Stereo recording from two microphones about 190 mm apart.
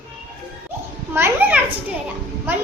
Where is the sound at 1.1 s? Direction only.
10° right (ahead or behind).